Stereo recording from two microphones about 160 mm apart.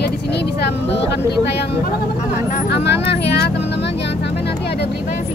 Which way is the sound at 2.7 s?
90° left.